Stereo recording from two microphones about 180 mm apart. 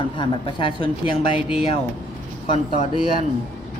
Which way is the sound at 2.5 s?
30° left (ahead or behind).